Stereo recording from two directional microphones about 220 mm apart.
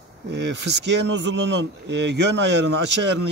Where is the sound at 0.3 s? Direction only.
50° right (ahead or behind).